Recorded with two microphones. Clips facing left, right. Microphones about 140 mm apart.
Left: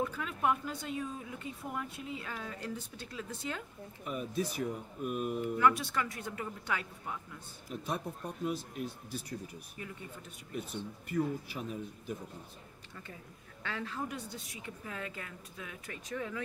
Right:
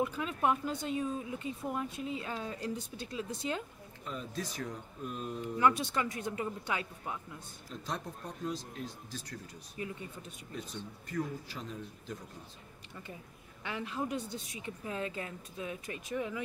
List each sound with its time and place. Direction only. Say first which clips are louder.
0.0 s speech: right 2 dB; 20° right (ahead or behind)
4.0 s speech: left 4 dB; 10° left (ahead or behind)
5.6 s speech: right 1 dB; 20° right (ahead or behind)
7.7 s speech: left 3 dB; 10° left (ahead or behind)
10.5 s speech: left 4 dB; 10° left (ahead or behind)
13.6 s speech: right 2 dB; 15° right (ahead or behind)
16.1 s speech: right 3 dB; 10° right (ahead or behind)